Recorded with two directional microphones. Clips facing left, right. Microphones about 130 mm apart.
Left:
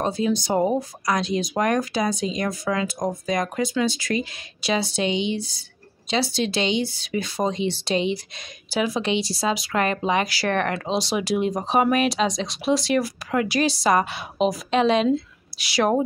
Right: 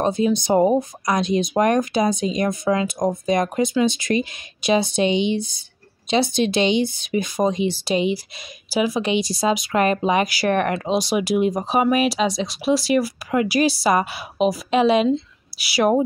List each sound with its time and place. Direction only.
0.0 s speech: 20° right (ahead or behind)